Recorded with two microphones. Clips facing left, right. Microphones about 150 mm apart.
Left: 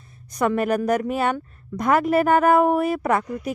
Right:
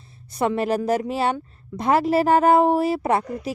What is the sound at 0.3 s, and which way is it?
Speech, 25° right (ahead or behind).